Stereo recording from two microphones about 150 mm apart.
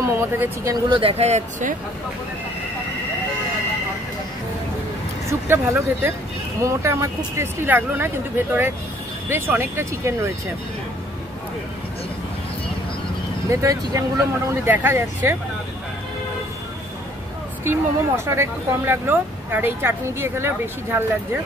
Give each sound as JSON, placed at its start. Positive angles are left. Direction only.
{"t": 0.0, "sound": "speech", "side_deg": -20}
{"t": 0.9, "sound": "speech", "side_deg": -40}
{"t": 5.3, "sound": "speech", "side_deg": -15}
{"t": 9.3, "sound": "speech", "side_deg": -15}
{"t": 13.5, "sound": "speech", "side_deg": -20}
{"t": 17.6, "sound": "speech", "side_deg": -15}